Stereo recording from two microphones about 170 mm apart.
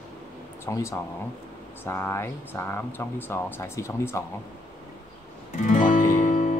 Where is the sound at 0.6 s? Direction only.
15° left (ahead or behind).